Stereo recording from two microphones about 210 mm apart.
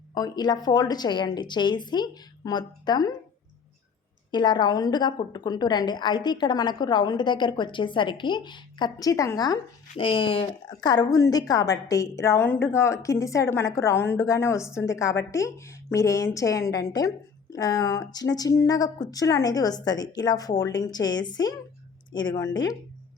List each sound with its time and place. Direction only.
0.1 s a woman's voice: 20° left (ahead or behind)
4.3 s a woman's voice: 20° left (ahead or behind)